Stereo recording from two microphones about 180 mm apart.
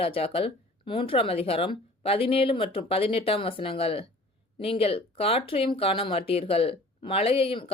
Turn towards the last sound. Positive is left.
turn(degrees=30)  # may be behind; listen again after turning